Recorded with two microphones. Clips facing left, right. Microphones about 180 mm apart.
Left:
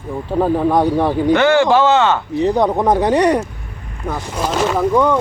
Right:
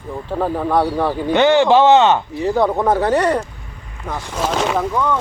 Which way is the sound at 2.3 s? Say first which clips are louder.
Left 2 dB; 20° left (ahead or behind).